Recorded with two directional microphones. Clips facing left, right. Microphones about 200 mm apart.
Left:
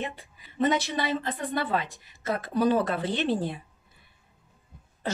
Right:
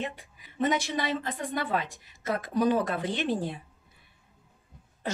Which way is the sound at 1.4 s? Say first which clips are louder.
Left 2 dB; 15° right (ahead or behind).